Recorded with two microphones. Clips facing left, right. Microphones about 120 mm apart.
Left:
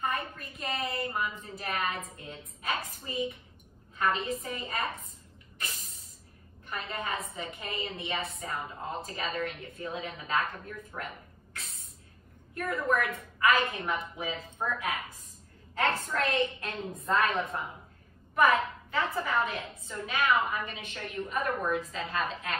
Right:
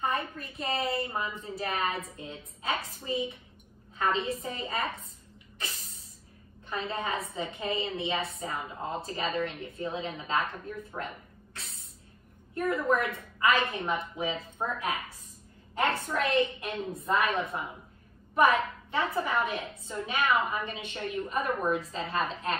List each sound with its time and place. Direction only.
0.0 s a woman's voice: 30° right (ahead or behind)
6.7 s a woman's voice: 25° right (ahead or behind)
9.3 s a woman's voice: 20° right (ahead or behind)
12.5 s a woman's voice: 25° right (ahead or behind)
15.7 s a woman's voice: 15° right (ahead or behind); by 22.6 s 30° right (ahead or behind)